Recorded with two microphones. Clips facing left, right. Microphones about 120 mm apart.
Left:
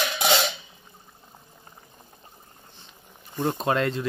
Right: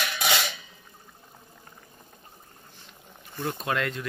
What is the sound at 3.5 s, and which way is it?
Speech, 35° left (ahead or behind).